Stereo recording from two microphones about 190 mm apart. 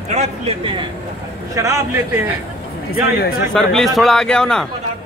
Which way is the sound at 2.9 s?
55° left (ahead or behind).